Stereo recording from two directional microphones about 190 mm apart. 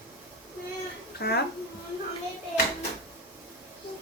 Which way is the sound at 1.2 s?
55° left (ahead or behind).